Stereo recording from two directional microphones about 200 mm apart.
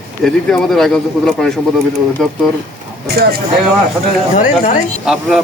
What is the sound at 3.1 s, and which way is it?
Speech, 50° right (ahead or behind).